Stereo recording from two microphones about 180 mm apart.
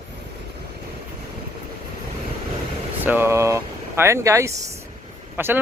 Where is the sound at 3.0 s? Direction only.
10° right (ahead or behind).